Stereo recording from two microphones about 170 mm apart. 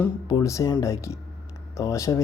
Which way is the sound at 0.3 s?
20° left (ahead or behind).